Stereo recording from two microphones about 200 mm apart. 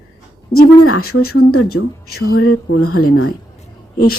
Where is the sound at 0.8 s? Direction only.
90° left.